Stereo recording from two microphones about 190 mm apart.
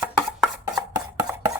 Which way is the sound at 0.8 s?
20° right (ahead or behind).